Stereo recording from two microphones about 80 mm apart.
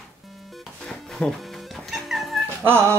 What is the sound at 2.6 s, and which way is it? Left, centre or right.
Speech, right.